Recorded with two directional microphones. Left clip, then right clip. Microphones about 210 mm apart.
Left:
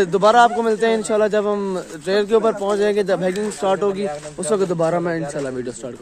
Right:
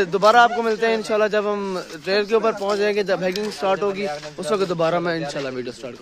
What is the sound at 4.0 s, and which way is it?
Speech, 35° right (ahead or behind).